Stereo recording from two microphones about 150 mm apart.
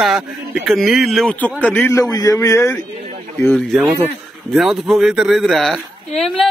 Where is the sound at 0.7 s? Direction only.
Centre (ahead or behind).